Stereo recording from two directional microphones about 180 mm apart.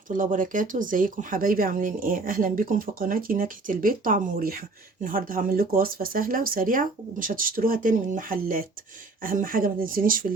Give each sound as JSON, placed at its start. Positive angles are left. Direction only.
{"t": 0.1, "sound": "speech", "side_deg": -45}